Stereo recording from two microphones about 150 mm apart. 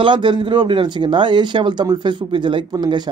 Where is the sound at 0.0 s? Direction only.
30° right (ahead or behind).